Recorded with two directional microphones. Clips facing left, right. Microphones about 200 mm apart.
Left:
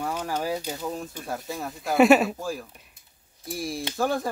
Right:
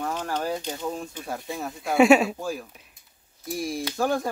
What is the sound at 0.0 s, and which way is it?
Speech, 10° left (ahead or behind).